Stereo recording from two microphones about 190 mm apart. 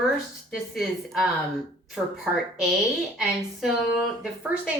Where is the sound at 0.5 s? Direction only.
Centre (ahead or behind).